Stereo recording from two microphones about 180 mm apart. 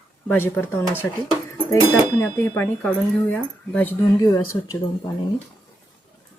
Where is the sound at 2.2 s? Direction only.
10° left (ahead or behind).